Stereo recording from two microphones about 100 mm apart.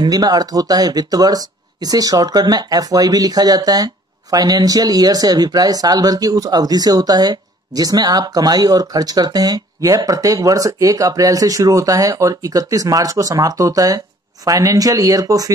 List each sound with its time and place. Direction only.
0.0 s speech: 40° right (ahead or behind)